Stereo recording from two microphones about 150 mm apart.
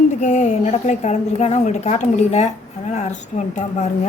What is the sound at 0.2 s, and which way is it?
A woman's voice, 50° left (ahead or behind).